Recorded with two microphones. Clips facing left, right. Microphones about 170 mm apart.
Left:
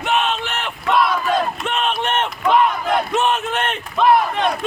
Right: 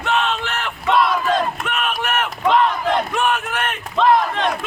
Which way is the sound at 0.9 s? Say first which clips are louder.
Even; centre (ahead or behind).